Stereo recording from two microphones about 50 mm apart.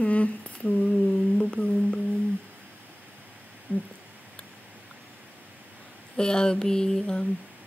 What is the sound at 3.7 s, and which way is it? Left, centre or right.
Speech, right.